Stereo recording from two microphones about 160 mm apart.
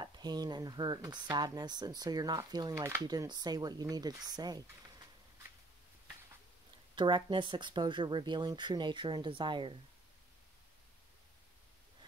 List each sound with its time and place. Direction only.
0.0 s speech: 25° right (ahead or behind)
7.0 s speech: 30° right (ahead or behind)